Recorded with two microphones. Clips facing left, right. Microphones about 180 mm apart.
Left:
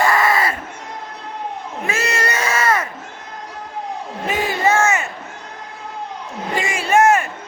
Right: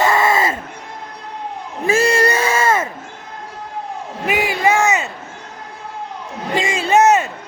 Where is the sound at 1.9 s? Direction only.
30° right (ahead or behind).